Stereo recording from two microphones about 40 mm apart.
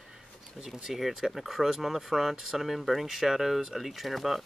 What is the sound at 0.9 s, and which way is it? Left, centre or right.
Speech, centre.